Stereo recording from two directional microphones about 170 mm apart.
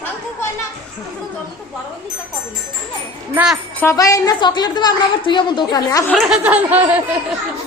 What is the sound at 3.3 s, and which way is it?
Speech, 5° right (ahead or behind).